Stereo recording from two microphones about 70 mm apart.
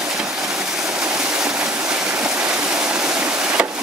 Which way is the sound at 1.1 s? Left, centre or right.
Centre.